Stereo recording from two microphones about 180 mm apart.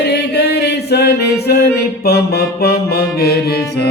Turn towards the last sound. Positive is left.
turn(degrees=60)  # may be behind; listen again after turning